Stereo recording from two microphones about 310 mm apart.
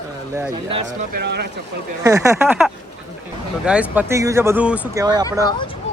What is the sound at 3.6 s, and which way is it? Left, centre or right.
Speech, centre.